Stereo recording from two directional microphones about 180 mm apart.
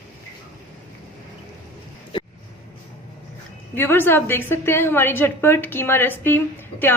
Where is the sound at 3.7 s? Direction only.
10° left (ahead or behind).